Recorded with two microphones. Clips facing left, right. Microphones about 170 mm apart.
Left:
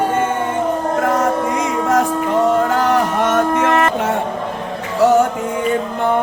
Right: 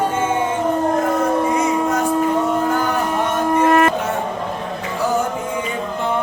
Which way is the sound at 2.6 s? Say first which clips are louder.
Left 3 dB; 90° left.